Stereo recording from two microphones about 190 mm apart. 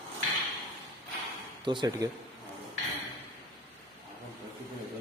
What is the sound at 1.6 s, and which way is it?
Speech, 25° right (ahead or behind).